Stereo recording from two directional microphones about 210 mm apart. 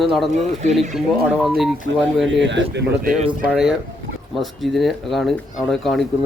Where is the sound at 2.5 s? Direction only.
55° right (ahead or behind).